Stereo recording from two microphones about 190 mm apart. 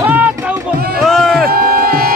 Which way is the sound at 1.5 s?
50° right (ahead or behind).